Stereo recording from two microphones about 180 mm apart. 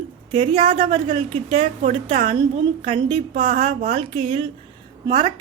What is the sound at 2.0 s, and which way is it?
A woman's voice, 30° right (ahead or behind).